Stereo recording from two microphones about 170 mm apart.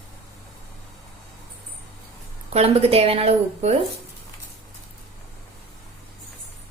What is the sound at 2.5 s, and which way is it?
A woman's voice, 35° right (ahead or behind).